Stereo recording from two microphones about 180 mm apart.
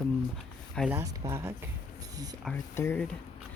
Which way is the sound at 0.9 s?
15° right (ahead or behind).